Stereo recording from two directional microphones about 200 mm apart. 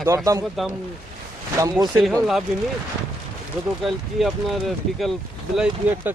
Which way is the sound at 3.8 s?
Centre (ahead or behind).